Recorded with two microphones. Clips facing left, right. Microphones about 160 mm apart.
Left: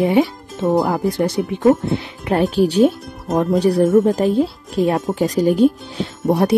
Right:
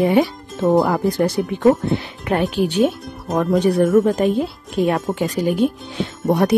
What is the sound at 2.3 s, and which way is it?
Speech, 40° left (ahead or behind).